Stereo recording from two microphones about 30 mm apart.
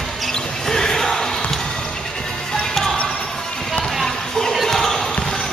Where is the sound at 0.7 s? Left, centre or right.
Centre.